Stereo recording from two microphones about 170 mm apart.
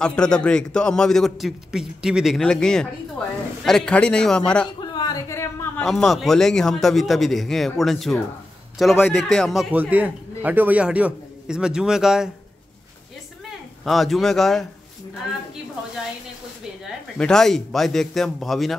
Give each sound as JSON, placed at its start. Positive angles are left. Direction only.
{"t": 0.0, "sound": "a man's voice", "side_deg": 5}
{"t": 4.9, "sound": "a sound", "side_deg": 20}
{"t": 5.9, "sound": "a man's voice", "side_deg": 0}
{"t": 13.8, "sound": "a man's voice", "side_deg": 0}
{"t": 17.2, "sound": "a man's voice", "side_deg": 5}